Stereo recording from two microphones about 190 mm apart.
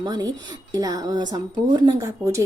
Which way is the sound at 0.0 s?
20° right (ahead or behind).